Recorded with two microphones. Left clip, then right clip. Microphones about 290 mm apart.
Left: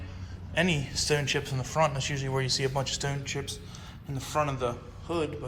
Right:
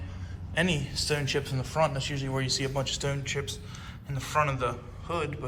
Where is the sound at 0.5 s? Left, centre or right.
Centre.